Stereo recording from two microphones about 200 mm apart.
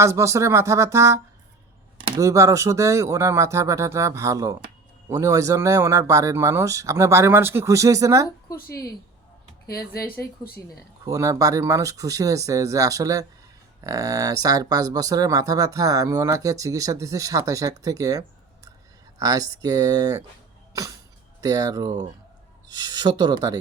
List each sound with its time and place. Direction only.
0.0 s speech: 15° right (ahead or behind)
8.5 s a woman's voice: 50° left (ahead or behind)
11.0 s speech: 15° right (ahead or behind)
21.4 s speech: 20° right (ahead or behind)